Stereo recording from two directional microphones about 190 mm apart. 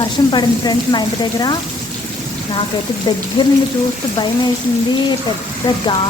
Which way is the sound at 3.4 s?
30° left (ahead or behind).